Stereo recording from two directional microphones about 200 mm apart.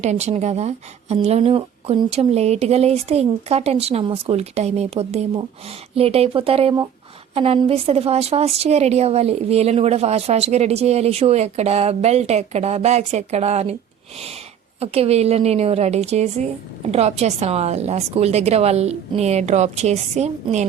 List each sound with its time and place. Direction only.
0.0 s a woman's voice: 35° right (ahead or behind)
14.8 s a woman's voice: 30° right (ahead or behind)